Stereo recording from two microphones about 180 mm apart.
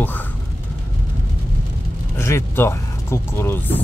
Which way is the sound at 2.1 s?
15° left (ahead or behind).